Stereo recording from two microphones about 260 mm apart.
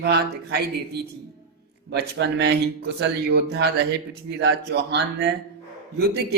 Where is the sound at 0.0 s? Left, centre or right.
Right.